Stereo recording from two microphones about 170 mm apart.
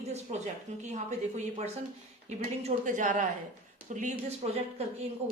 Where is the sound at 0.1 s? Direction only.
40° right (ahead or behind).